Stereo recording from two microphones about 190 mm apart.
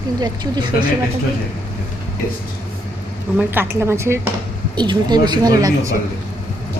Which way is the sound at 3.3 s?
10° right (ahead or behind).